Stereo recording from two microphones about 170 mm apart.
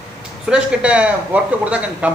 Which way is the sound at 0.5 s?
5° right (ahead or behind).